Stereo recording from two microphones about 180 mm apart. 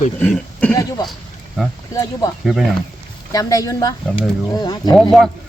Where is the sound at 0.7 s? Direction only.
20° left (ahead or behind).